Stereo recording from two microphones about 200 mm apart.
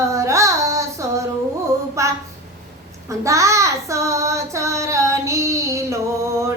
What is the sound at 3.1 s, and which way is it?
Child singing, 15° right (ahead or behind).